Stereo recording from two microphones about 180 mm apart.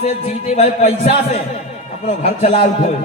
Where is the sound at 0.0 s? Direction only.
35° left (ahead or behind).